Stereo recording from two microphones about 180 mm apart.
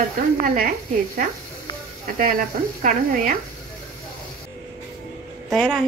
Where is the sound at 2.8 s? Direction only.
50° right (ahead or behind).